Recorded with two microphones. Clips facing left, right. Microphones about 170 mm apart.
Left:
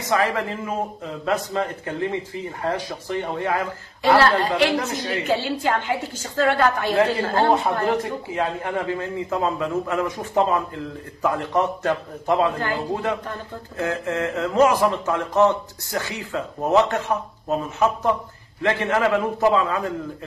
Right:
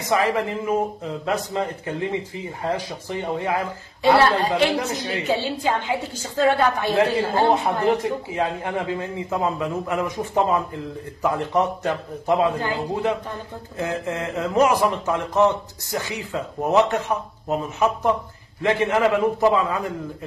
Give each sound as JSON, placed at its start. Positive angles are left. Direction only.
{"t": 0.0, "sound": "a woman's voice", "side_deg": -15}
{"t": 3.1, "sound": "a woman's voice", "side_deg": -15}